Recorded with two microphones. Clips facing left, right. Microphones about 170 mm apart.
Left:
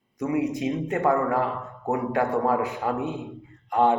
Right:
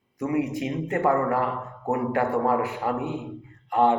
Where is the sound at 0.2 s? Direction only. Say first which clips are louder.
Even; 20° left (ahead or behind).